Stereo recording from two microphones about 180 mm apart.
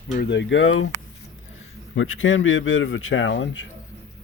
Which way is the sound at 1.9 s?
90° left.